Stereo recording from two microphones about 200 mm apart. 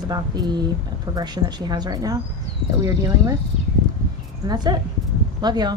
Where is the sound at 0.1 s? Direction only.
20° right (ahead or behind).